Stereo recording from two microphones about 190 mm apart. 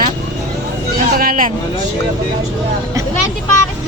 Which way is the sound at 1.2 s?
45° right (ahead or behind).